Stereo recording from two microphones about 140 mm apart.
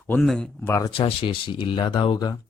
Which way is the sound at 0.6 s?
15° left (ahead or behind).